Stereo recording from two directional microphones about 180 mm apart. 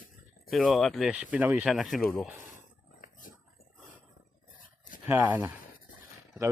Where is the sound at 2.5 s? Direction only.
50° left (ahead or behind).